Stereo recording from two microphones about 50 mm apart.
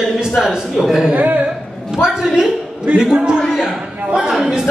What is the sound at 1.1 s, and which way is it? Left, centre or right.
Speech, right.